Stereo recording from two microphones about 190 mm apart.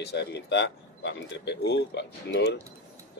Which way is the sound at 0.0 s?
60° left (ahead or behind).